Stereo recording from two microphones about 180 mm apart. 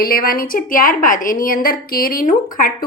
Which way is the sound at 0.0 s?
55° left (ahead or behind).